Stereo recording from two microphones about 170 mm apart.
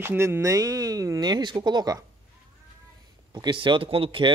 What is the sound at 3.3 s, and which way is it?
Speech, 25° right (ahead or behind).